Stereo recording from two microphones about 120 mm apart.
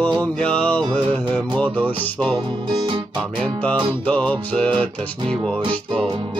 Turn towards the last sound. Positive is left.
turn(degrees=-40)  # may be behind; listen again after turning